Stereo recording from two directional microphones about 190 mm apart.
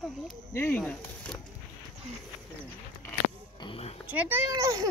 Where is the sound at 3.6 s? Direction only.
30° left (ahead or behind).